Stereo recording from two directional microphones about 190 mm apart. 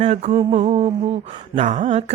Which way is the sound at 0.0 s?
35° right (ahead or behind).